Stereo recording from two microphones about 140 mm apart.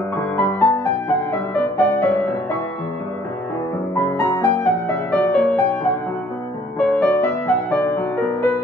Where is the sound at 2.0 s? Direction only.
15° left (ahead or behind).